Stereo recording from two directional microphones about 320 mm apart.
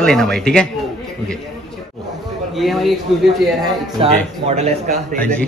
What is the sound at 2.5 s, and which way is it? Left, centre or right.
Speech, centre.